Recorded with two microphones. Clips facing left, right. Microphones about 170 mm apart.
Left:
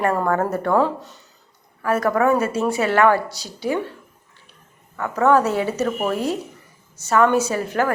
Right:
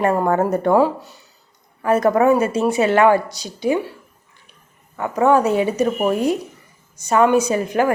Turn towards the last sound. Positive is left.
turn(degrees=-15)  # may be behind; listen again after turning